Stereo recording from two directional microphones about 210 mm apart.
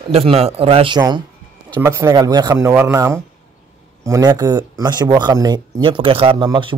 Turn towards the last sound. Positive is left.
turn(degrees=-25)  # may be behind; listen again after turning